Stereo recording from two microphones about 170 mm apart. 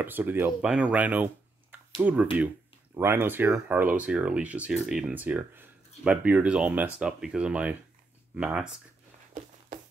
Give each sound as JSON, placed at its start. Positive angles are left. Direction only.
{"t": 0.0, "sound": "speech", "side_deg": -10}
{"t": 9.7, "sound": "music", "side_deg": -55}